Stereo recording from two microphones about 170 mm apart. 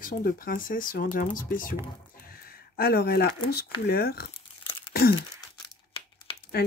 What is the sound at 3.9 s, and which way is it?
Speech, 65° left (ahead or behind).